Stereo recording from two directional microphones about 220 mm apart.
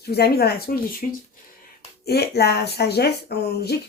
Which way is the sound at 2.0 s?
45° left (ahead or behind).